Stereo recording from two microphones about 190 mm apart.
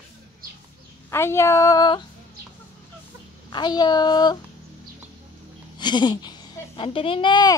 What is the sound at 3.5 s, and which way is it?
Speech, 20° left (ahead or behind).